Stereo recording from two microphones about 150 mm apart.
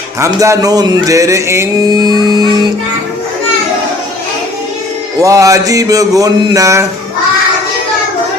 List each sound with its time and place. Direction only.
0.2 s speech: 20° right (ahead or behind)
5.2 s speech: 20° right (ahead or behind)